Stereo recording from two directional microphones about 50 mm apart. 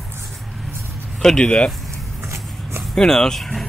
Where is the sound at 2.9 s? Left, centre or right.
Centre.